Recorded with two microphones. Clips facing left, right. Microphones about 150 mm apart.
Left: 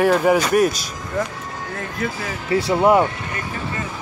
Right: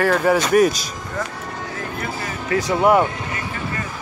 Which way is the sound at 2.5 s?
30° left (ahead or behind).